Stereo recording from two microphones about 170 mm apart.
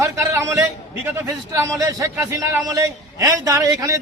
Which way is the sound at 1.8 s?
20° right (ahead or behind).